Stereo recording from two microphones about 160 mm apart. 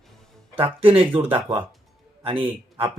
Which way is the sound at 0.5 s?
35° right (ahead or behind).